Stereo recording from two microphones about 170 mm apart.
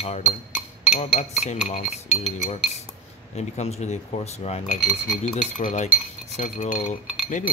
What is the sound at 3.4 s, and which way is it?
Speech, 40° left (ahead or behind).